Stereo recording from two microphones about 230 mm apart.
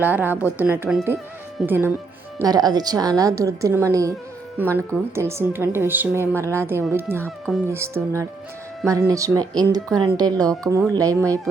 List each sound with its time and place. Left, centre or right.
0.0 s a woman's voice: centre
7.2 s speech: centre
7.7 s a woman's voice: centre